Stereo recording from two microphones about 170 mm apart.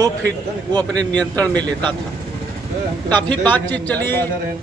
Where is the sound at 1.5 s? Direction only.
25° right (ahead or behind).